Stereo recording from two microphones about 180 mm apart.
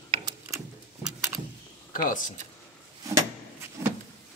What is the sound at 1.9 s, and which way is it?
Speech, 45° left (ahead or behind).